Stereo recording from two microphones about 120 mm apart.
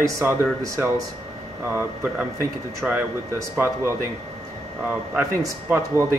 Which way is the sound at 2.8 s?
Centre (ahead or behind).